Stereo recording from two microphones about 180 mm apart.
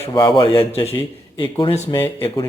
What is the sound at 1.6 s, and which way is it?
Speech, 30° left (ahead or behind).